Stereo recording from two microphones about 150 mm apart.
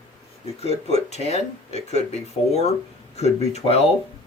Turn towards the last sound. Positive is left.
turn(degrees=45)  # may be behind; listen again after turning